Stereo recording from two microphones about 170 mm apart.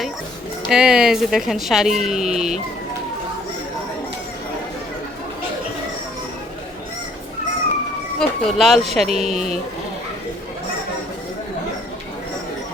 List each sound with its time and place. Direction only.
0.7 s a woman's voice: 5° right (ahead or behind)
8.2 s a woman's voice: centre (ahead or behind)
9.0 s speech: 40° right (ahead or behind)